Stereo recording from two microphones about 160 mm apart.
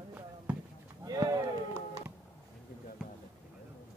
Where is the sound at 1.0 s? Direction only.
25° right (ahead or behind).